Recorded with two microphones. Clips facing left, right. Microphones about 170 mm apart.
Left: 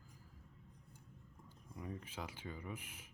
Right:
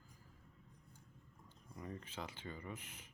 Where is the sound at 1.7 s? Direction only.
10° left (ahead or behind).